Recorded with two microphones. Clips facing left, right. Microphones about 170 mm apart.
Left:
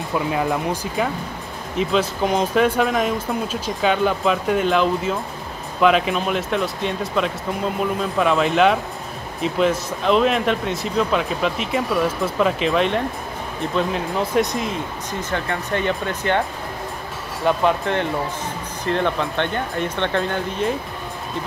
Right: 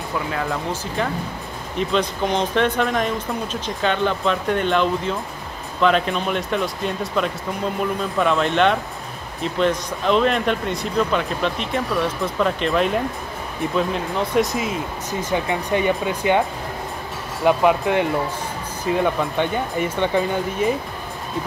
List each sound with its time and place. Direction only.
0.3 s speech: 15° left (ahead or behind)
1.8 s speech: 5° left (ahead or behind)
17.5 s speech: 10° right (ahead or behind)